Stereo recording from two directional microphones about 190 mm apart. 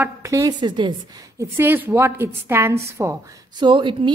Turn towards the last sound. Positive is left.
turn(degrees=-25)  # may be behind; listen again after turning